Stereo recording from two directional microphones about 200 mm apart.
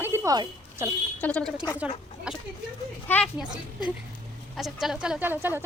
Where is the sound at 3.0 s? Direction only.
10° left (ahead or behind).